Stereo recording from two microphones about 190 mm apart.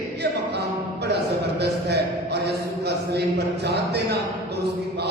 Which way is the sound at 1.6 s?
60° right (ahead or behind).